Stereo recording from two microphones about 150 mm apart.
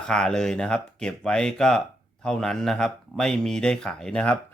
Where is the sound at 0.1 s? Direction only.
5° left (ahead or behind).